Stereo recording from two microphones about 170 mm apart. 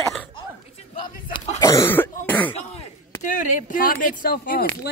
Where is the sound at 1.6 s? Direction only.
20° left (ahead or behind).